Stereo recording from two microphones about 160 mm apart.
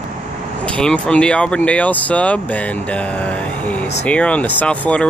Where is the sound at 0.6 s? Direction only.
5° left (ahead or behind).